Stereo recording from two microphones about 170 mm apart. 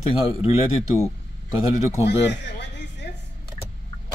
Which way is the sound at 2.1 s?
90° left.